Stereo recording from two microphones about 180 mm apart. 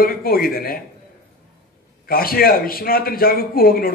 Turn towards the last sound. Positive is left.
turn(degrees=55)  # may be behind; listen again after turning